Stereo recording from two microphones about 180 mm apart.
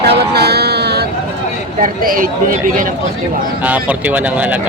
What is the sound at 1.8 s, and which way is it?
Speech, 50° right (ahead or behind).